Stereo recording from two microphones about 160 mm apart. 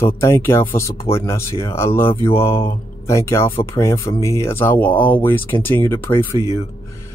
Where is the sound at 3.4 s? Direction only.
30° left (ahead or behind).